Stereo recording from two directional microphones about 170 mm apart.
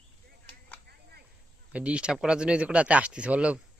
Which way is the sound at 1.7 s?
5° right (ahead or behind).